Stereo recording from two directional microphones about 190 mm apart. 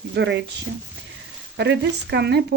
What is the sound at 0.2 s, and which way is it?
Speech, 65° right (ahead or behind).